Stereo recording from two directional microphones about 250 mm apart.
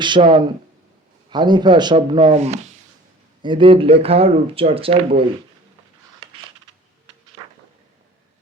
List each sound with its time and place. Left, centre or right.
0.0 s a man's voice: centre